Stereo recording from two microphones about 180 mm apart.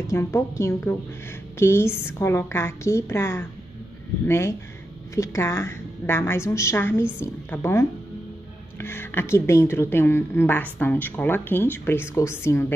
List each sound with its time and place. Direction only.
0.1 s a woman's voice: 15° left (ahead or behind)